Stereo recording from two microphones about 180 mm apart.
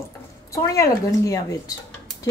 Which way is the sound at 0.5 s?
15° left (ahead or behind).